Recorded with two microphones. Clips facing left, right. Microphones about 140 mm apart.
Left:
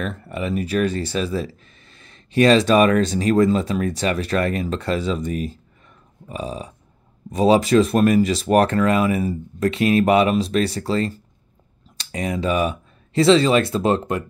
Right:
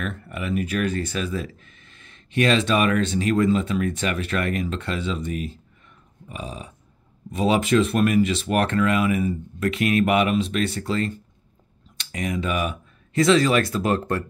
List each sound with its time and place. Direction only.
0.0 s speech: 30° left (ahead or behind)
6.2 s a sound: 35° left (ahead or behind)
7.2 s speech: 35° left (ahead or behind)